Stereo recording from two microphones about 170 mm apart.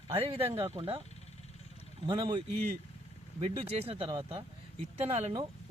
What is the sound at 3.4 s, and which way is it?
Speech, 35° right (ahead or behind).